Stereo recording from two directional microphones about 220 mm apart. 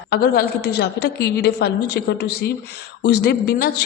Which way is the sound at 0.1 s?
45° left (ahead or behind).